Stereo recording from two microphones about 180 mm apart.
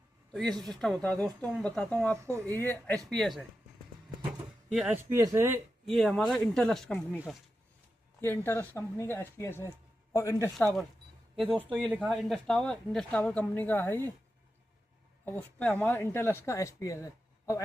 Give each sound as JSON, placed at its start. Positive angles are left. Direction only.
{"t": 0.3, "sound": "speech", "side_deg": 0}
{"t": 4.7, "sound": "speech", "side_deg": -5}
{"t": 5.1, "sound": "speech", "side_deg": -15}
{"t": 5.8, "sound": "speech", "side_deg": 0}
{"t": 8.4, "sound": "speech", "side_deg": 15}
{"t": 11.7, "sound": "speech", "side_deg": -5}
{"t": 15.2, "sound": "speech", "side_deg": 10}